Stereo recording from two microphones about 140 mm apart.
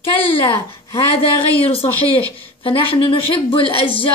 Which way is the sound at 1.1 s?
40° left (ahead or behind).